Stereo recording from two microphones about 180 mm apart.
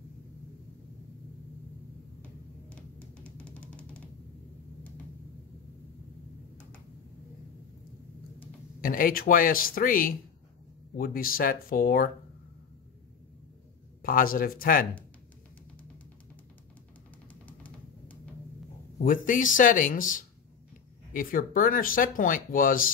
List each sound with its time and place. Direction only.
3.3 s music: 5° left (ahead or behind)
8.8 s speech: 50° left (ahead or behind)
14.0 s speech: 55° left (ahead or behind)
17.3 s music: 10° left (ahead or behind)
19.0 s speech: 45° left (ahead or behind)